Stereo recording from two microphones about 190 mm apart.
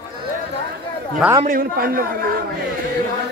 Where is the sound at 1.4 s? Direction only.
50° right (ahead or behind).